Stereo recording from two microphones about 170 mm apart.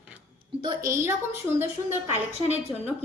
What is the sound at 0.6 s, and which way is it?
Speech, 15° right (ahead or behind).